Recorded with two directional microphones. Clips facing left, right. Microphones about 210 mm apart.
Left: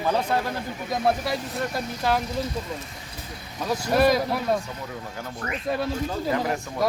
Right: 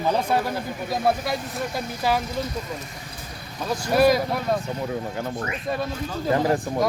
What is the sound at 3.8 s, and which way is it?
Speech, centre (ahead or behind).